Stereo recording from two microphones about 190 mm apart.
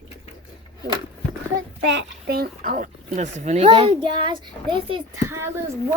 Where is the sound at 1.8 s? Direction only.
70° right (ahead or behind); by 4.9 s 25° right (ahead or behind).